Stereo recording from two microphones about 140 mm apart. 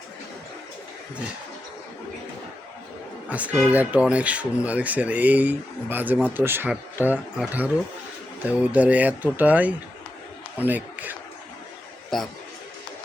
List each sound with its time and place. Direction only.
3.2 s a man's voice: 10° right (ahead or behind)